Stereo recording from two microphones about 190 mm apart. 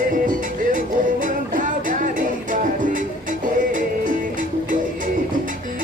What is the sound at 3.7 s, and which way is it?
Music, 45° right (ahead or behind).